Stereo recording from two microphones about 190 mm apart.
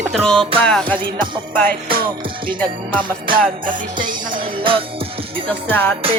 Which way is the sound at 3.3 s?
25° right (ahead or behind).